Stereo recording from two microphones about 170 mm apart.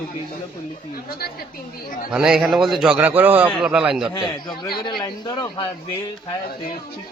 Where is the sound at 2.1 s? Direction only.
5° right (ahead or behind).